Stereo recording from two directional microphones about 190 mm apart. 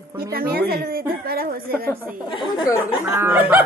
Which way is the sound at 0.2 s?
55° right (ahead or behind).